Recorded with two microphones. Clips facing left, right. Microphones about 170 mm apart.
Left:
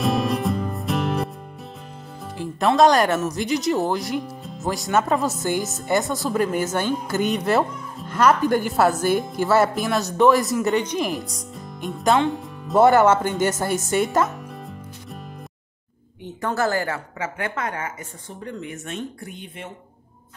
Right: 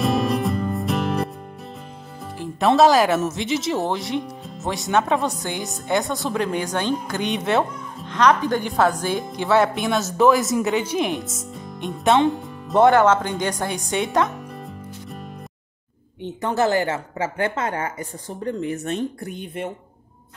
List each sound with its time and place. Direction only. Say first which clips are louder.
0.0 s music: right 1 dB; centre (ahead or behind)
2.6 s speech: right 1 dB; 5° right (ahead or behind)
16.3 s a woman's voice: right 3 dB; 20° right (ahead or behind); by 19.3 s 35° right (ahead or behind)